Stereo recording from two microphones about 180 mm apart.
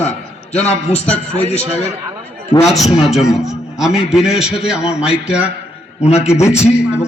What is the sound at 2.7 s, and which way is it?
A man's voice, centre (ahead or behind).